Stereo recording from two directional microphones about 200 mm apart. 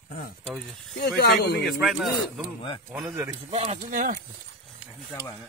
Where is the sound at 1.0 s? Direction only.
55° left (ahead or behind).